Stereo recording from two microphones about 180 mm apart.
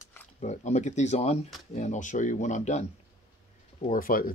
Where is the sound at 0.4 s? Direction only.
40° left (ahead or behind).